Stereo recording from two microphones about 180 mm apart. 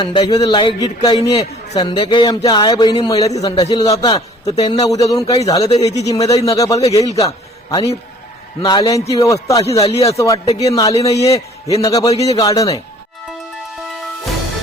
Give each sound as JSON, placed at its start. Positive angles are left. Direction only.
{"t": 0.0, "sound": "a man's voice", "side_deg": 25}
{"t": 7.7, "sound": "a man's voice", "side_deg": 30}
{"t": 9.8, "sound": "speech", "side_deg": 35}
{"t": 10.1, "sound": "speech", "side_deg": 15}
{"t": 10.4, "sound": "speech", "side_deg": 35}
{"t": 10.8, "sound": "a man's voice", "side_deg": 20}